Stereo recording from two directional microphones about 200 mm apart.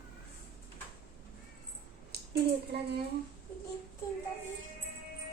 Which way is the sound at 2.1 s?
55° right (ahead or behind).